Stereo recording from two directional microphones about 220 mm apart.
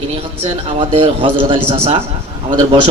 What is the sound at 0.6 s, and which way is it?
A man's voice, 25° right (ahead or behind).